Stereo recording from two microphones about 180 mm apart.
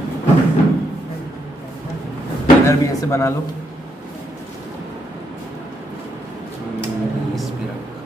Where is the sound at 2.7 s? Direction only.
15° left (ahead or behind).